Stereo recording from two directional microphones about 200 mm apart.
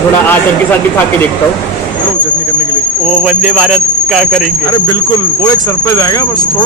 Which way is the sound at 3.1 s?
Centre (ahead or behind).